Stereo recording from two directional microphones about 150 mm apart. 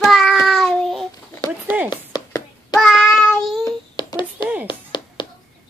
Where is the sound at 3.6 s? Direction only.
30° left (ahead or behind).